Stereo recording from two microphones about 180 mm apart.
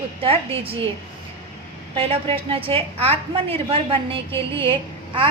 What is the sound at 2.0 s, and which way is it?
A woman's voice, 30° right (ahead or behind).